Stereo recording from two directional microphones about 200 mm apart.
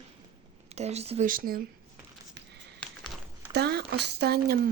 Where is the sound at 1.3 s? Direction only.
45° right (ahead or behind).